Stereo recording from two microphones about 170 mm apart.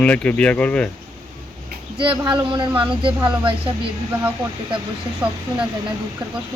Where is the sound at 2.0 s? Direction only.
30° right (ahead or behind).